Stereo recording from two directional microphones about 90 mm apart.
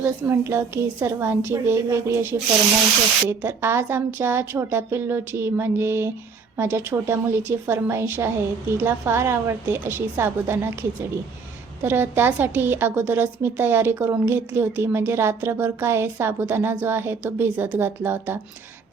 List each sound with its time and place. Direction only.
0.0 s a woman's voice: 30° right (ahead or behind)
11.8 s a woman's voice: 25° right (ahead or behind)